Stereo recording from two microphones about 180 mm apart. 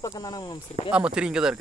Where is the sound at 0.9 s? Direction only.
5° right (ahead or behind).